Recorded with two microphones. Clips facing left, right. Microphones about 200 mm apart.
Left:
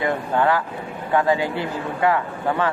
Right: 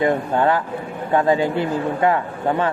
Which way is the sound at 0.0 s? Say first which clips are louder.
Right 3 dB; 25° right (ahead or behind).